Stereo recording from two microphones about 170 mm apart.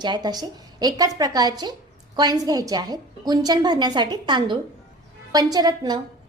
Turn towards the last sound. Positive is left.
turn(degrees=-25)  # may be behind; listen again after turning